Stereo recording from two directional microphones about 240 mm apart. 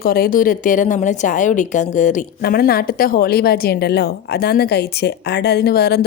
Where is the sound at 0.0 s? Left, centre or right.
Left.